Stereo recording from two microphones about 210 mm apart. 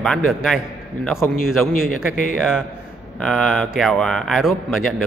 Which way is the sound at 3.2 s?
Centre (ahead or behind).